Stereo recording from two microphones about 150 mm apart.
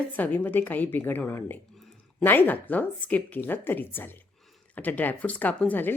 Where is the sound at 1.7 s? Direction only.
Centre (ahead or behind).